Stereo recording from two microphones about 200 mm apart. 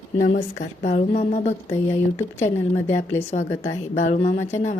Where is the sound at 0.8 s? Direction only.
35° left (ahead or behind).